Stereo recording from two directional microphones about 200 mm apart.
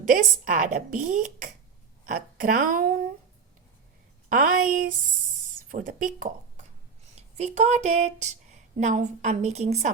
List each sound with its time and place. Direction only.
0.1 s a woman's voice: 40° right (ahead or behind)
4.3 s a woman's voice: 45° right (ahead or behind)